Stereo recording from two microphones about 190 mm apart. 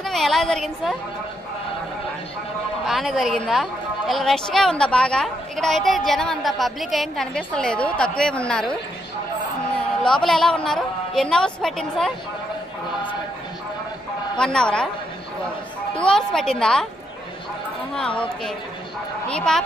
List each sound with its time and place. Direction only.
0.0 s a woman's voice: centre (ahead or behind)
2.9 s a woman's voice: centre (ahead or behind)
10.2 s a woman's voice: centre (ahead or behind)
14.4 s a woman's voice: 5° left (ahead or behind)
15.9 s a woman's voice: 5° left (ahead or behind)
17.9 s a woman's voice: 5° left (ahead or behind)
19.2 s a woman's voice: 5° left (ahead or behind)